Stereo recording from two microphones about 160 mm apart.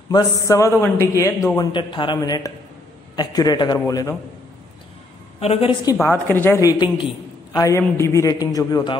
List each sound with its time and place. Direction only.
0.1 s a man's voice: 20° left (ahead or behind)
5.4 s a woman's voice: 40° left (ahead or behind)
6.0 s a man's voice: 15° left (ahead or behind)